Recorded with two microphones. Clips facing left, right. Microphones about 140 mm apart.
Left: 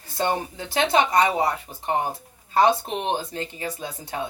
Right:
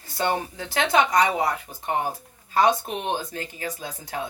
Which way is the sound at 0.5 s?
25° left (ahead or behind).